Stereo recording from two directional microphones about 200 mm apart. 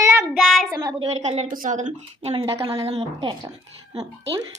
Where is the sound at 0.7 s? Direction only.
20° right (ahead or behind).